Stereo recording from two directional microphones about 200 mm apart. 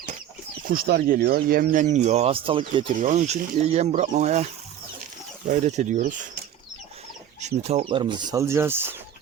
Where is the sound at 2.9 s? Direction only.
40° right (ahead or behind).